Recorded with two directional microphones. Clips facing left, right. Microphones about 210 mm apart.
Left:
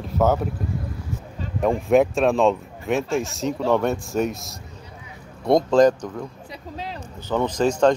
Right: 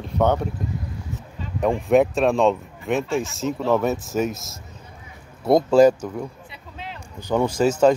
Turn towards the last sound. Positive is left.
turn(degrees=-5)  # may be behind; listen again after turning